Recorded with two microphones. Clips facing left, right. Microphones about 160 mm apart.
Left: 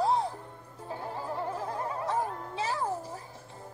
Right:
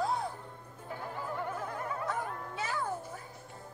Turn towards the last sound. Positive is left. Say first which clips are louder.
# left 3 dB
turn(degrees=30)  # may be behind; listen again after turning